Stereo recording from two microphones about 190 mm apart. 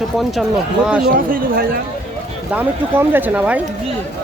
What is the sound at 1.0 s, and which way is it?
Speech, 50° right (ahead or behind).